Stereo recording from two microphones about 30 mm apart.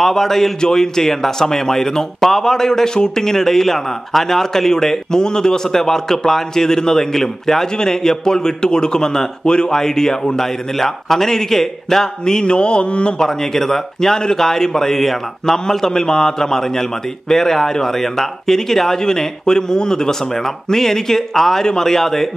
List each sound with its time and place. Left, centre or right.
0.0 s a man's voice: centre
9.4 s speech: left
9.7 s a man's voice: centre
12.3 s mantra: left
13.6 s a man's voice: centre